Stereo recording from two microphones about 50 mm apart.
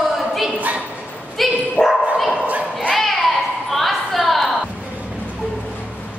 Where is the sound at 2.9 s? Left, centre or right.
Centre.